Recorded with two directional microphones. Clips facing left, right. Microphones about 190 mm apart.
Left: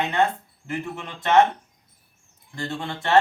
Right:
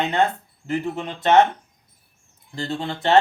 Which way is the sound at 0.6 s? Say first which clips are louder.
Right 6 dB; 35° right (ahead or behind).